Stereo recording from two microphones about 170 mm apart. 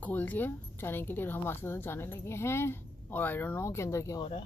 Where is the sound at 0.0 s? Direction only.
10° left (ahead or behind).